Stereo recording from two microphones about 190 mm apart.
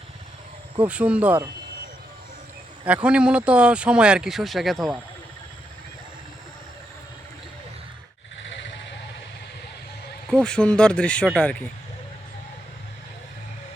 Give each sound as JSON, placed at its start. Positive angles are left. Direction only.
{"t": 0.8, "sound": "speech", "side_deg": -5}
{"t": 2.8, "sound": "speech", "side_deg": -5}
{"t": 8.5, "sound": "vehicle", "side_deg": 70}
{"t": 10.2, "sound": "speech", "side_deg": 5}